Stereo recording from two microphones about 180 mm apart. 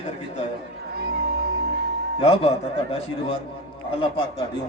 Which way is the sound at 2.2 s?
35° left (ahead or behind).